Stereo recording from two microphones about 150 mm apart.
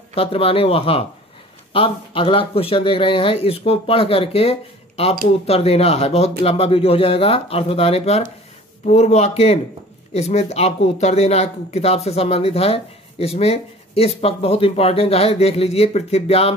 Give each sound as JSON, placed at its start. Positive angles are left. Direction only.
{"t": 0.1, "sound": "speech", "side_deg": 40}